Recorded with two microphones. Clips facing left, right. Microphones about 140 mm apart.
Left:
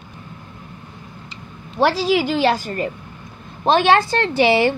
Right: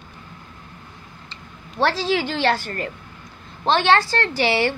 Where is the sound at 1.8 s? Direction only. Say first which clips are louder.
Left 4 dB; 10° left (ahead or behind).